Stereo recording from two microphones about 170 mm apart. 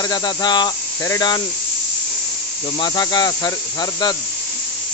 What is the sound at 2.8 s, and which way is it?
Speech, 25° left (ahead or behind).